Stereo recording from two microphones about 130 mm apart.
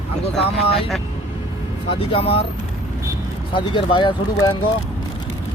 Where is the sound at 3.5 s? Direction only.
40° left (ahead or behind).